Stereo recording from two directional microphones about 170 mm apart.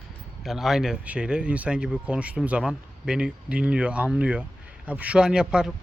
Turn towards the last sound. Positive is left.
turn(degrees=-5)  # may be behind; listen again after turning